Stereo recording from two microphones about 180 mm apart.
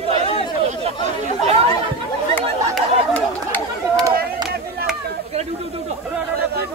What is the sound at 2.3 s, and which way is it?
Chatter, 10° left (ahead or behind).